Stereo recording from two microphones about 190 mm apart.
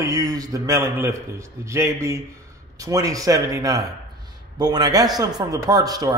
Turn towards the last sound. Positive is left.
turn(degrees=-20)  # may be behind; listen again after turning